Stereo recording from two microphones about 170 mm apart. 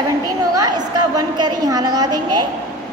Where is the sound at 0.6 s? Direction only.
25° right (ahead or behind).